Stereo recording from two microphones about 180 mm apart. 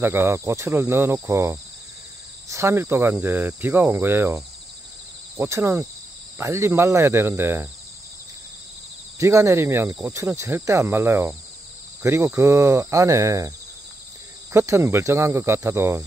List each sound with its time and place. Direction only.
0.0 s speech: 15° right (ahead or behind)
9.2 s speech: 15° right (ahead or behind)
14.5 s speech: 15° right (ahead or behind)